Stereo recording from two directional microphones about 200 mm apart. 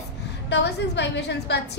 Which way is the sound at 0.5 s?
60° left (ahead or behind).